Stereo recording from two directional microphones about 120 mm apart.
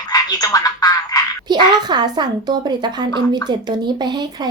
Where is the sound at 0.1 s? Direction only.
35° left (ahead or behind).